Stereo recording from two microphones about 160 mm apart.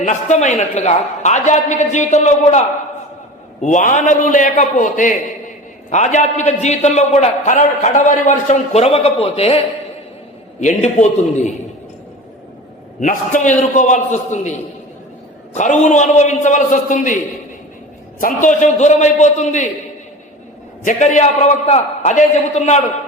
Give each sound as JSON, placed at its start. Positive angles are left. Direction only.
{"t": 0.0, "sound": "a man's voice", "side_deg": 50}
{"t": 10.6, "sound": "a man's voice", "side_deg": 45}
{"t": 13.0, "sound": "a man's voice", "side_deg": 50}
{"t": 15.5, "sound": "a man's voice", "side_deg": 50}
{"t": 18.4, "sound": "a man's voice", "side_deg": 50}
{"t": 20.8, "sound": "a man's voice", "side_deg": 50}